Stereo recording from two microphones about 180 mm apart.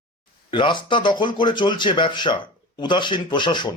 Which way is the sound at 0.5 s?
25° left (ahead or behind).